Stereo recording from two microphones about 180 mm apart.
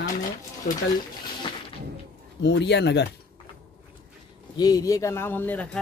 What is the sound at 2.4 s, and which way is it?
Speech, 75° left (ahead or behind).